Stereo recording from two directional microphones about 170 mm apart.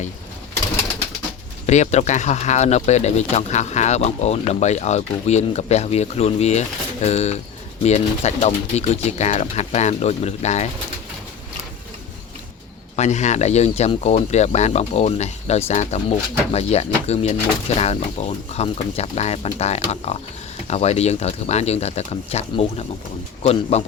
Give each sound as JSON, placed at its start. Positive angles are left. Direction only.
{"t": 1.6, "sound": "speech", "side_deg": 40}
{"t": 13.0, "sound": "speech", "side_deg": 40}